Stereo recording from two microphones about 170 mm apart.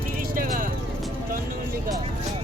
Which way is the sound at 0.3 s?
55° right (ahead or behind).